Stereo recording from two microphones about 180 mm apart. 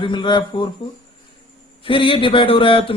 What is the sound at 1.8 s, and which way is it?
Speech, 30° left (ahead or behind).